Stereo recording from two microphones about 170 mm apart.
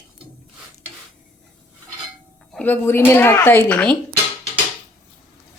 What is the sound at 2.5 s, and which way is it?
Speech, 10° left (ahead or behind).